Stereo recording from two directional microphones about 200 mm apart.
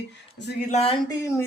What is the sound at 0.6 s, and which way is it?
Speech, 30° left (ahead or behind).